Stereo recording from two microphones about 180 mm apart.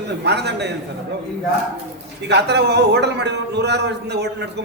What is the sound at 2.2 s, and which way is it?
A man's voice, 70° right (ahead or behind).